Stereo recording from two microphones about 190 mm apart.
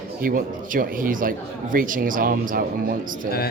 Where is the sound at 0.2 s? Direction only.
45° right (ahead or behind).